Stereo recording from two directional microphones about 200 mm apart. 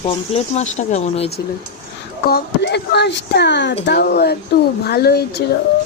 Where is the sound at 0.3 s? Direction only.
35° left (ahead or behind).